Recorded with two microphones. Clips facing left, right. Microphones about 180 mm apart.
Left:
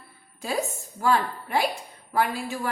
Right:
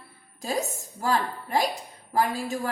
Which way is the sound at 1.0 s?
35° right (ahead or behind).